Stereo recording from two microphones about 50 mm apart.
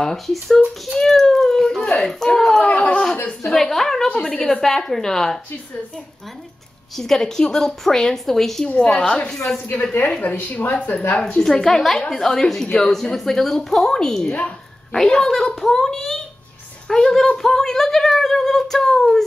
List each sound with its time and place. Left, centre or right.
0.0 s speech: centre
0.9 s a sound: centre
2.6 s a sound: left
3.4 s speech: centre
4.1 s a woman's voice: left
4.5 s speech: centre
7.0 s speech: centre
8.6 s a woman's voice: left
10.2 s speech: left
11.1 s speech: centre
14.2 s a woman's voice: left
14.9 s speech: centre